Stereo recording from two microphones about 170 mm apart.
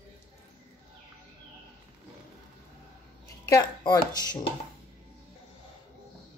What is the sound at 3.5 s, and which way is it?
Speech, 20° left (ahead or behind).